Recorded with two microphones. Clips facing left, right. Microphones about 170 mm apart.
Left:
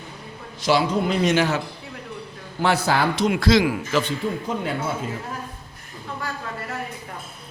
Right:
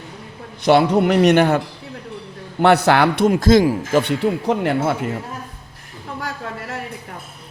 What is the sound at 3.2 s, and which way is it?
Speech, 45° right (ahead or behind).